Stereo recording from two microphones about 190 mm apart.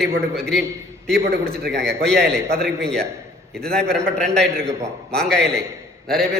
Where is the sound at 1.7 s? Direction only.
60° right (ahead or behind).